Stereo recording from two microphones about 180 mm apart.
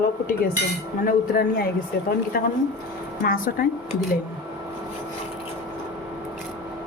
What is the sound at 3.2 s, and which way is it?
Speech, 50° left (ahead or behind).